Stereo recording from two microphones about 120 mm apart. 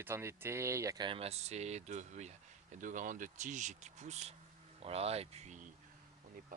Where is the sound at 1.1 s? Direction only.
55° right (ahead or behind); by 2.3 s 75° right (ahead or behind).